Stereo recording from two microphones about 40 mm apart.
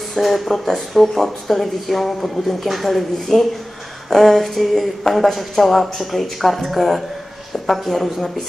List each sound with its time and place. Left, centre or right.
0.1 s speech: centre